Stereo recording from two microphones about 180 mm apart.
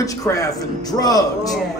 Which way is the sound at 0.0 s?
20° left (ahead or behind).